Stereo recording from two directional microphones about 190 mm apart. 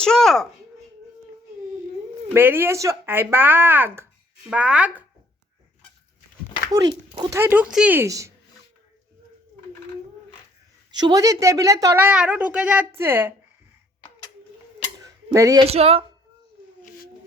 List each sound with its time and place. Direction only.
0.0 s a woman's voice: centre (ahead or behind)
2.3 s a woman's voice: 10° right (ahead or behind)
7.2 s a woman's voice: 15° right (ahead or behind)
10.9 s a woman's voice: 20° right (ahead or behind)
14.9 s a sound: 15° right (ahead or behind)
15.6 s speech: 30° right (ahead or behind)